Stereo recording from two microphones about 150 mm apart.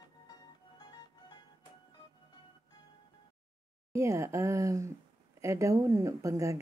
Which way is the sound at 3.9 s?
20° right (ahead or behind).